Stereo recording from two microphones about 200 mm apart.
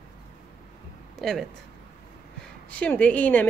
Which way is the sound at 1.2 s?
Centre (ahead or behind).